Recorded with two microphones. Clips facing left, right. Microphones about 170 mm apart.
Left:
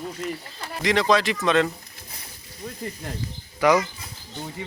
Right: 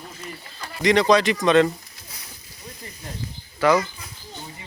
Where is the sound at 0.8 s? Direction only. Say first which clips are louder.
Right 3 dB; centre (ahead or behind).